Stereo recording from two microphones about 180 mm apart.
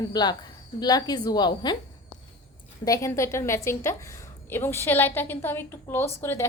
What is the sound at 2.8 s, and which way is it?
Speech, 15° left (ahead or behind).